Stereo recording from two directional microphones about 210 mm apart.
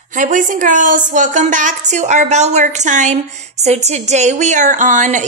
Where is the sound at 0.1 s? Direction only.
40° right (ahead or behind).